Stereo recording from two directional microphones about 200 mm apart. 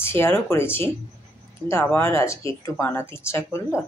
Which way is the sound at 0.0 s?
10° left (ahead or behind).